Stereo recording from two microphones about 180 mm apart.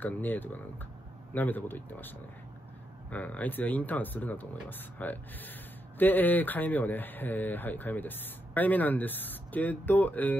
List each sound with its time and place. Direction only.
0.0 s speech: 10° left (ahead or behind)